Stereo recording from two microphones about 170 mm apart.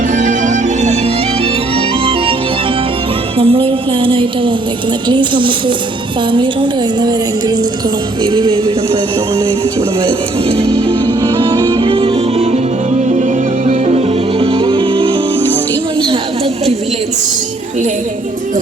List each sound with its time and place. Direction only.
0.1 s music: 50° right (ahead or behind)
3.3 s music: 30° right (ahead or behind)
10.0 s music: 30° right (ahead or behind)